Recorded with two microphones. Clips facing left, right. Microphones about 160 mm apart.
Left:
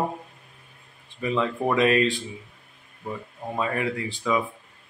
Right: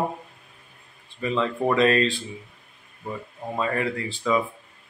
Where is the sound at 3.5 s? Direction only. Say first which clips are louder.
Right 1 dB; 10° left (ahead or behind).